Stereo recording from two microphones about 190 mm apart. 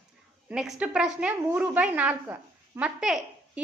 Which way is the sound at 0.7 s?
5° right (ahead or behind).